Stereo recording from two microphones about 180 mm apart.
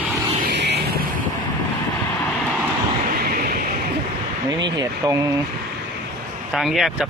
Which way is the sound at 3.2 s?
55° right (ahead or behind).